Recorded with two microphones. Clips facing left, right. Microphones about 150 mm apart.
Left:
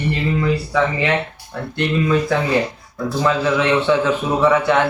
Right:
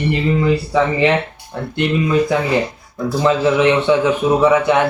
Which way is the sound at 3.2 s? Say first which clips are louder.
Right 4 dB; 20° right (ahead or behind).